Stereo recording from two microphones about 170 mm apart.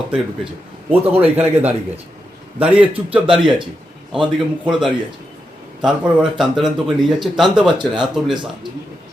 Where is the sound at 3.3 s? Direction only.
30° right (ahead or behind).